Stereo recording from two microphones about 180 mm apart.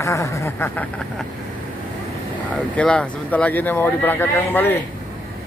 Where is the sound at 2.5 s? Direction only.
5° left (ahead or behind).